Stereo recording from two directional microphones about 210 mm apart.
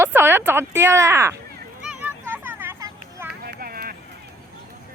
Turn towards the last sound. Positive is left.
turn(degrees=-45)  # may be behind; listen again after turning